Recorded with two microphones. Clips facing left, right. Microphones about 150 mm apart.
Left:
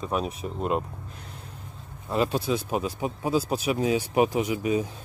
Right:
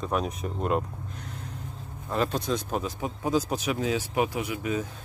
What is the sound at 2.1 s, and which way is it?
Speech, 10° left (ahead or behind).